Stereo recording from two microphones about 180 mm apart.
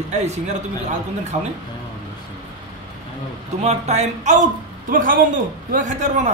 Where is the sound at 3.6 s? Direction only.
40° right (ahead or behind).